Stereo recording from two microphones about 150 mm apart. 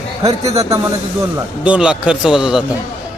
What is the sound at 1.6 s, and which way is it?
Speech, 5° right (ahead or behind).